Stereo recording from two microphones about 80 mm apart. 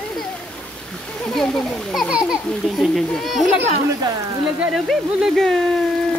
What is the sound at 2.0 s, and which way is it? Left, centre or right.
Speech, centre.